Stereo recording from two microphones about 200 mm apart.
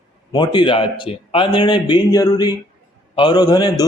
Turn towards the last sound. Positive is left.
turn(degrees=20)  # may be behind; listen again after turning